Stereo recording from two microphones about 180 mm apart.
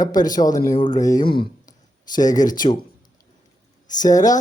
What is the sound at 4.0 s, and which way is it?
Speech, 20° left (ahead or behind).